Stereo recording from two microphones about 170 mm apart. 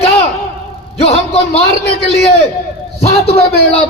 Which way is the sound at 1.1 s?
35° left (ahead or behind).